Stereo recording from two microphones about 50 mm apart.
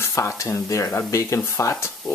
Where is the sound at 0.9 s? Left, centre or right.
Left.